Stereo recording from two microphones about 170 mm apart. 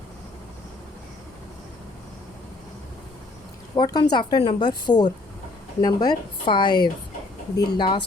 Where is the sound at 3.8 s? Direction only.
25° left (ahead or behind).